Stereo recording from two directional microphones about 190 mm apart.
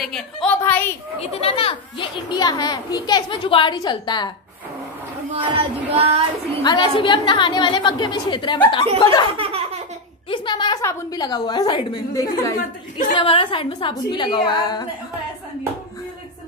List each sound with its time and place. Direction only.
0.0 s a woman's voice: 5° left (ahead or behind)
1.2 s a child's voice: 30° left (ahead or behind)
5.3 s speech: 30° right (ahead or behind)
6.6 s a child's voice: 25° left (ahead or behind)
9.4 s a sound: 30° right (ahead or behind)
10.3 s a child's voice: 25° left (ahead or behind)